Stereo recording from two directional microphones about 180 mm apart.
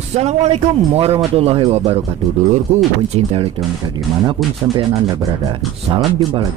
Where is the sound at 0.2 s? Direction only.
35° right (ahead or behind).